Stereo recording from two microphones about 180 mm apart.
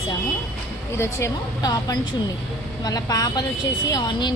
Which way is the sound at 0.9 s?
15° left (ahead or behind).